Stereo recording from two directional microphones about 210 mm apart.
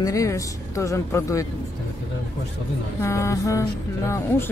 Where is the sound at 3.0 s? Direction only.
15° left (ahead or behind).